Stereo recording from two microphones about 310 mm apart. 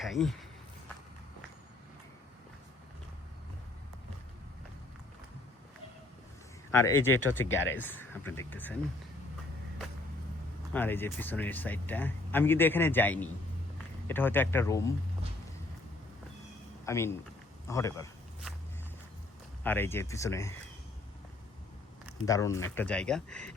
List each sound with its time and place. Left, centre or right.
0.0 s speech: centre
6.7 s speech: centre
7.4 s speech: left
7.8 s speech: centre
10.7 s speech: centre
16.8 s speech: centre
19.6 s speech: centre
22.3 s speech: centre